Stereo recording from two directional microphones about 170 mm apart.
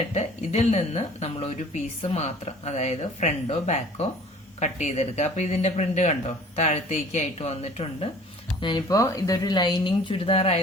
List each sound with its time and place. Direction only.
0.1 s speech: 40° left (ahead or behind)
8.6 s speech: 20° left (ahead or behind)